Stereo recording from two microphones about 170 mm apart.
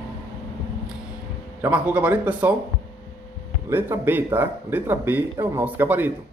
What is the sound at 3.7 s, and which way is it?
A man's voice, 10° right (ahead or behind).